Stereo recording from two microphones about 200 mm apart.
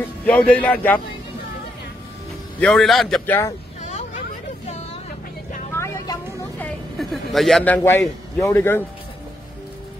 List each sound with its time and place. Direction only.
0.2 s a man's voice: 10° left (ahead or behind)
2.6 s a man's voice: centre (ahead or behind)
3.8 s hubbub: 35° left (ahead or behind)
5.7 s vehicle: 15° left (ahead or behind)
6.6 s a man's voice: centre (ahead or behind)